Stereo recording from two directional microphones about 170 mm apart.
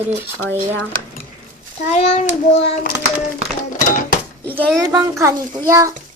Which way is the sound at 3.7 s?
55° left (ahead or behind).